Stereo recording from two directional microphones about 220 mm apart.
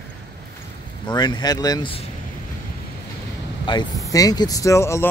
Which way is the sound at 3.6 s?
20° left (ahead or behind).